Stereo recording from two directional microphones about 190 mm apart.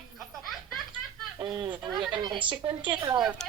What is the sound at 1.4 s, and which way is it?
Speech, 25° right (ahead or behind).